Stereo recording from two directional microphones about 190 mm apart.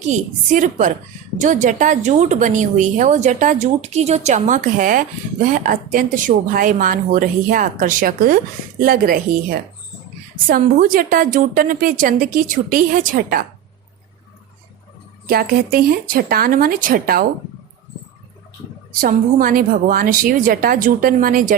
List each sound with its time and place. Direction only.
0.0 s a woman's voice: 40° right (ahead or behind)
15.3 s a woman's voice: 50° right (ahead or behind)
18.9 s a woman's voice: 45° right (ahead or behind)